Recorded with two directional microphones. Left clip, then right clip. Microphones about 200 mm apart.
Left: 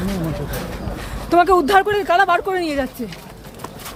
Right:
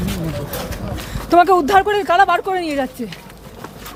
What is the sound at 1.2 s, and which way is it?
Speech, 10° right (ahead or behind).